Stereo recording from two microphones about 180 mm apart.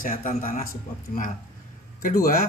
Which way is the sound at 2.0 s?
50° left (ahead or behind).